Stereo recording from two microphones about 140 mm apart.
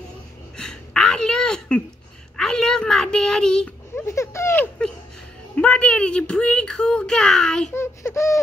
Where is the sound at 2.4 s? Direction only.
5° left (ahead or behind).